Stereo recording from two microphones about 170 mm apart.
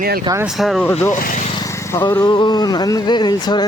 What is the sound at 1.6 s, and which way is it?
Vehicle, 15° left (ahead or behind).